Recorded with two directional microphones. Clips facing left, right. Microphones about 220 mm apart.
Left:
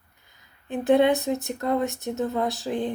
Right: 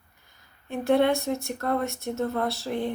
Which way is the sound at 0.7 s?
20° left (ahead or behind).